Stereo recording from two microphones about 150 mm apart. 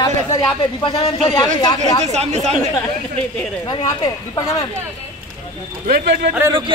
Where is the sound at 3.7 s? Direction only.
30° left (ahead or behind).